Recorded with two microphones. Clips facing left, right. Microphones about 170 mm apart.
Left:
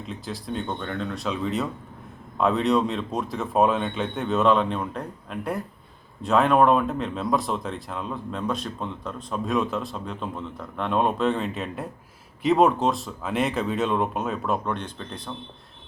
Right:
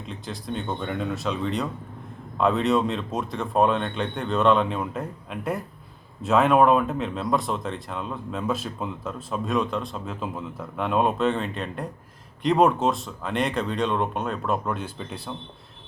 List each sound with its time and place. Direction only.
0.0 s speech: centre (ahead or behind)